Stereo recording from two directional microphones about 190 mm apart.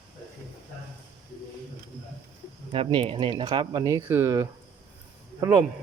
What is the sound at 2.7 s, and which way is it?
Speech, 30° right (ahead or behind).